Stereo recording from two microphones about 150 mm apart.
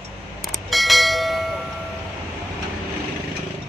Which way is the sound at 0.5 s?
Centre (ahead or behind).